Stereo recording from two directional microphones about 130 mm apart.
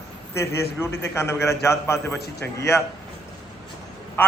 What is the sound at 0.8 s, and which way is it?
A man's voice, 20° left (ahead or behind).